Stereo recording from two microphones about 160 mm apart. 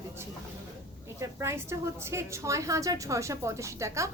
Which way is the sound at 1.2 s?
20° right (ahead or behind).